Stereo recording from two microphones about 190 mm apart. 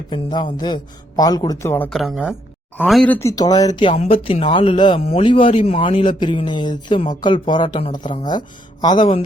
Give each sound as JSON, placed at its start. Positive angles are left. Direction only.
{"t": 0.1, "sound": "speech", "side_deg": 20}
{"t": 1.9, "sound": "speech", "side_deg": 0}